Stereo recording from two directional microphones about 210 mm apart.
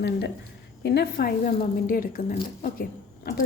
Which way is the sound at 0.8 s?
50° left (ahead or behind).